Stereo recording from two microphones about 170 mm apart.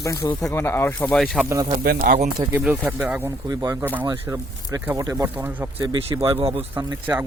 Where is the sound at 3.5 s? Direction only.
20° right (ahead or behind).